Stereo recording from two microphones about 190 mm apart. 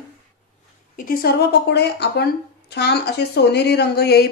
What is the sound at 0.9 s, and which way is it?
Speech, 50° left (ahead or behind).